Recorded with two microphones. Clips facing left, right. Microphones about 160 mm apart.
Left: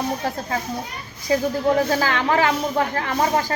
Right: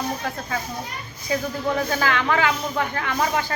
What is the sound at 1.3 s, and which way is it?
Speech, 35° left (ahead or behind).